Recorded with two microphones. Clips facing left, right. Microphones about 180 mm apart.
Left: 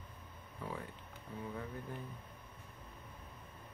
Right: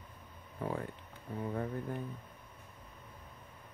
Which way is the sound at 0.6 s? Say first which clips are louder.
Right 7 dB; 55° right (ahead or behind).